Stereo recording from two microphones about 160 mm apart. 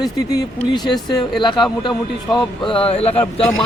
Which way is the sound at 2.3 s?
30° left (ahead or behind).